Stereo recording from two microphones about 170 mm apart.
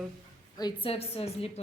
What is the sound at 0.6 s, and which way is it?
Speech, 30° left (ahead or behind).